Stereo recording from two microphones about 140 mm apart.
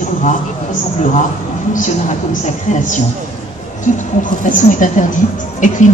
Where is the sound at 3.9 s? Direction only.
65° left (ahead or behind).